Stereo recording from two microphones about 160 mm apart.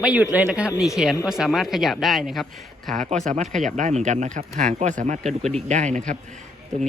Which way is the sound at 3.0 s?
50° right (ahead or behind).